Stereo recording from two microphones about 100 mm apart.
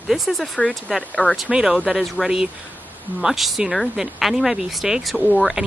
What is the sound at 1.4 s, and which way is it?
Speech, 5° right (ahead or behind).